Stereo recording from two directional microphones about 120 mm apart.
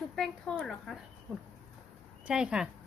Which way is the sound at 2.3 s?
5° right (ahead or behind).